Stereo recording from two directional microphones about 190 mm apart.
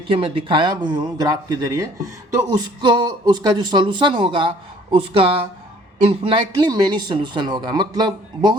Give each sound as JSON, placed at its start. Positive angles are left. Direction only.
{"t": 0.1, "sound": "speech", "side_deg": -30}
{"t": 2.8, "sound": "speech", "side_deg": -25}